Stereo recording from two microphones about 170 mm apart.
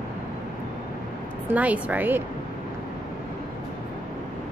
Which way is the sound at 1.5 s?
10° right (ahead or behind).